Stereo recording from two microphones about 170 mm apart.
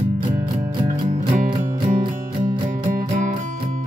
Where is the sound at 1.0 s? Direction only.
45° right (ahead or behind).